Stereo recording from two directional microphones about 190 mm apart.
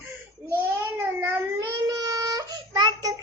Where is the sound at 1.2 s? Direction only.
20° right (ahead or behind).